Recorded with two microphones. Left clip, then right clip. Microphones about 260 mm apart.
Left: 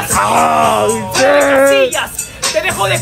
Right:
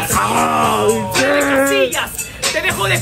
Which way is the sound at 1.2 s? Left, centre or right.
Centre.